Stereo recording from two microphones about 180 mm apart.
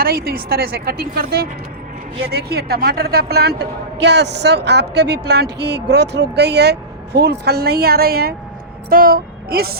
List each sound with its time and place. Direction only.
0.0 s a woman's voice: 55° right (ahead or behind)